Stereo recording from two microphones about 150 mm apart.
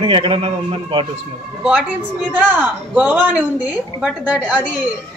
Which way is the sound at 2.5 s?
10° right (ahead or behind).